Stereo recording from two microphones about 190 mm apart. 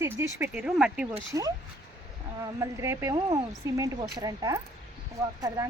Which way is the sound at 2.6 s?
15° right (ahead or behind).